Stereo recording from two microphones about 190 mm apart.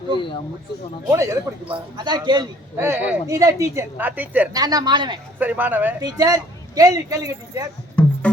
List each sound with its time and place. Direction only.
0.2 s speech: 25° left (ahead or behind)
1.1 s a man's voice: 15° right (ahead or behind)
4.5 s speech: 20° right (ahead or behind)
5.4 s a man's voice: 10° right (ahead or behind)